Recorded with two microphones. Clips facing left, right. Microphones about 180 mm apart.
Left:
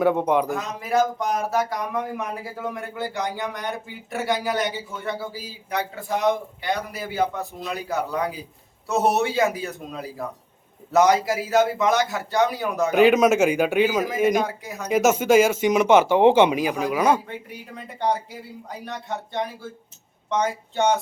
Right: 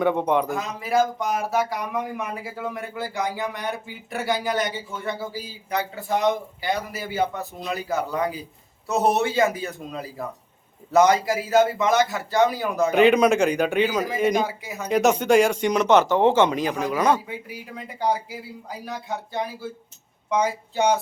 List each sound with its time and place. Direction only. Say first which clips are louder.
0.0 s speech: left 1 dB; 5° left (ahead or behind)
17.2 s speech: right 1 dB; 5° right (ahead or behind)